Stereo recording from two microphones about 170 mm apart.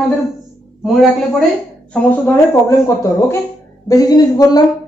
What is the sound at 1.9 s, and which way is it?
Speech, 10° left (ahead or behind).